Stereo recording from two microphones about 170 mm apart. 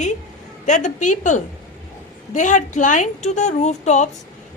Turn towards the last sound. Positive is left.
turn(degrees=45)  # may be behind; listen again after turning